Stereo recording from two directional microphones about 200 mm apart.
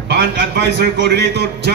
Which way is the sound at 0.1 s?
60° right (ahead or behind).